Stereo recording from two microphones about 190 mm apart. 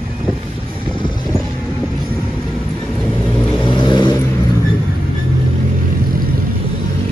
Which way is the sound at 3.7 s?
25° left (ahead or behind).